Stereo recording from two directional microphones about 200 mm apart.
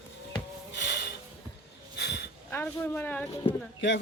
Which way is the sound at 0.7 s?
55° left (ahead or behind).